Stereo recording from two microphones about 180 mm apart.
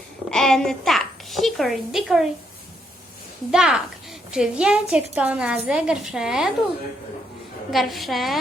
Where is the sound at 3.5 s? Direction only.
5° right (ahead or behind).